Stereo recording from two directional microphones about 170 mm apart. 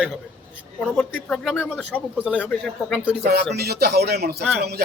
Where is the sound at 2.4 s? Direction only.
5° left (ahead or behind).